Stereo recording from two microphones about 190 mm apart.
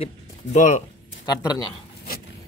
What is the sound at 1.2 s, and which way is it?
Speech, 20° left (ahead or behind).